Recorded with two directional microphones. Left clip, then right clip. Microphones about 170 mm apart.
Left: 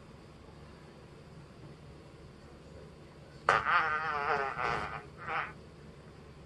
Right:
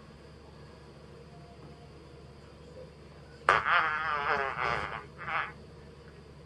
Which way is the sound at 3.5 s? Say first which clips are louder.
Right 2 dB; 40° right (ahead or behind).